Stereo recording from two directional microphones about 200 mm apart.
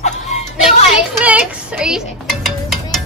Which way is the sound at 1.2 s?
5° right (ahead or behind).